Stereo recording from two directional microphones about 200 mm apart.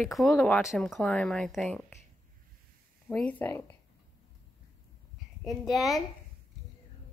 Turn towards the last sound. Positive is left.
turn(degrees=0)  # may be behind; listen again after turning